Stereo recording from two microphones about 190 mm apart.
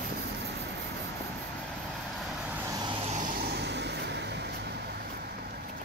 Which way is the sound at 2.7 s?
25° right (ahead or behind).